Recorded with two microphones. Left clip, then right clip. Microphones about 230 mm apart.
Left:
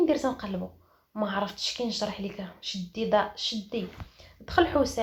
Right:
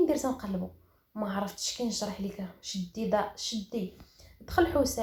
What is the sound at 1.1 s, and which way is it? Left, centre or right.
Speech, left.